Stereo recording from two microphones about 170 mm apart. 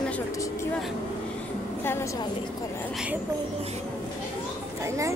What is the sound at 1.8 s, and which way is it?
Speech, 15° left (ahead or behind).